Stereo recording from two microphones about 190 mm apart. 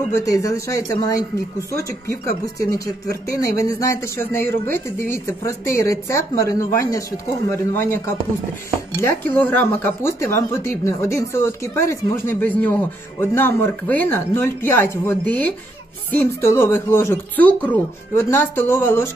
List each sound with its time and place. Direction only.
0.1 s speech: 15° left (ahead or behind)